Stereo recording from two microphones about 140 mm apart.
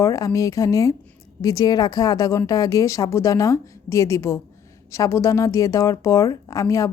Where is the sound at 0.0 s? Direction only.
25° left (ahead or behind).